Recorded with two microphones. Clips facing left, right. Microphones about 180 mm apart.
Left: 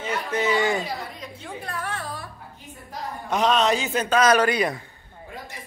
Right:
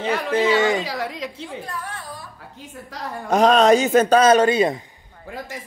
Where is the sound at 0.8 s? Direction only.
90° right.